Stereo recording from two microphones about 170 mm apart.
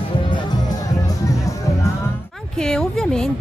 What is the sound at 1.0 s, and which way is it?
Music, 20° left (ahead or behind).